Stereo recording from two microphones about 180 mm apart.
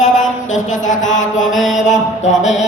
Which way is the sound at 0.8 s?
45° left (ahead or behind).